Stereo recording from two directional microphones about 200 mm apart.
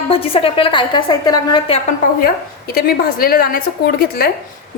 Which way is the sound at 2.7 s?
50° left (ahead or behind).